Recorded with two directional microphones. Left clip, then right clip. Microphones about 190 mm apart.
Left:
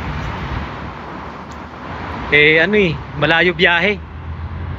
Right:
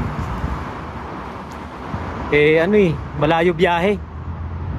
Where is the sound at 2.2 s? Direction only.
15° right (ahead or behind).